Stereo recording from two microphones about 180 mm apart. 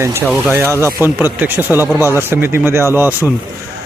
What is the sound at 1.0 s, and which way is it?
Speech, 10° right (ahead or behind).